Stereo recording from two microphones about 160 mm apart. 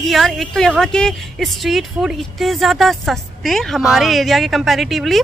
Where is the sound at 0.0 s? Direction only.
Centre (ahead or behind).